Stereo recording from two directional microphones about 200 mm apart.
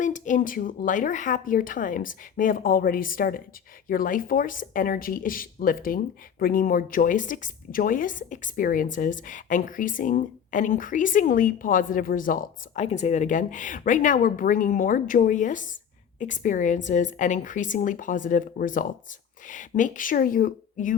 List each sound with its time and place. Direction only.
0.0 s a woman's voice: 40° left (ahead or behind)